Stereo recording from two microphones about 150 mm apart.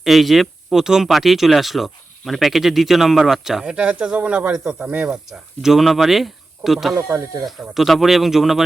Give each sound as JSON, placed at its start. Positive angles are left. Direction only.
{"t": 0.0, "sound": "speech", "side_deg": 0}
{"t": 6.9, "sound": "speech", "side_deg": -20}
{"t": 7.4, "sound": "speech", "side_deg": 0}